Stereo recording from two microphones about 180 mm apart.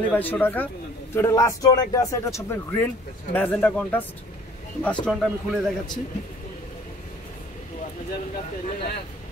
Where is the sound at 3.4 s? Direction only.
5° left (ahead or behind).